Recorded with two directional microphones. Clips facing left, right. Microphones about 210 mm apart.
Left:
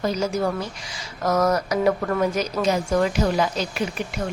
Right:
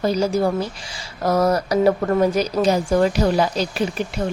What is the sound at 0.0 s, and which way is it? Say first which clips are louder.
Speech: right 4 dB; 35° right (ahead or behind).